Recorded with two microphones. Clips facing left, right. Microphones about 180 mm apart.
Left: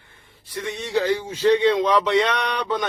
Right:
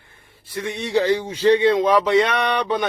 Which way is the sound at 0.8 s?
70° right (ahead or behind).